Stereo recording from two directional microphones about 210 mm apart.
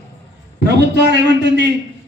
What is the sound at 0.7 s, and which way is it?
A man's voice, 55° right (ahead or behind).